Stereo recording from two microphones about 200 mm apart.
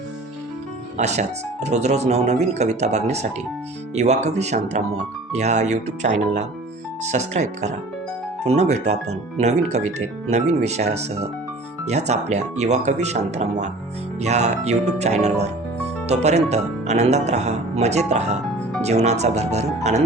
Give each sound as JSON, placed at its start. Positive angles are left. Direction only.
{"t": 0.9, "sound": "speech", "side_deg": -35}